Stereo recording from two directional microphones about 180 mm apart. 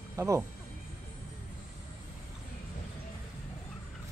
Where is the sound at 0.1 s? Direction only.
15° right (ahead or behind).